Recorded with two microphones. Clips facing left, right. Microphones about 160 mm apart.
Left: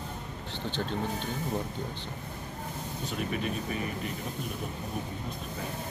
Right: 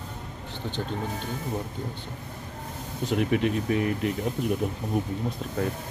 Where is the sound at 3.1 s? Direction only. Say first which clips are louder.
Right 9 dB; 90° right.